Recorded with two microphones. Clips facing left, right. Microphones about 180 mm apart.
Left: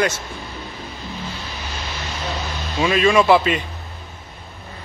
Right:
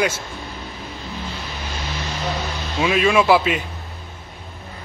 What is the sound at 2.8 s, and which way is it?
Speech, 5° right (ahead or behind).